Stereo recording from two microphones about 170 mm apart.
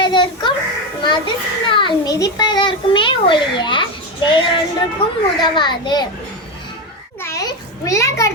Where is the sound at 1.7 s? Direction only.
25° left (ahead or behind).